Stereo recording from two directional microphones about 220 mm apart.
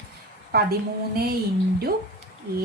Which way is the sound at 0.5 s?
45° right (ahead or behind).